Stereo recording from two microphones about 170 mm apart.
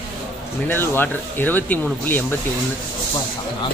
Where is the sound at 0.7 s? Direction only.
10° left (ahead or behind).